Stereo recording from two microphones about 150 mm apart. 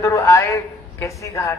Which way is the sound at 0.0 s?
20° left (ahead or behind).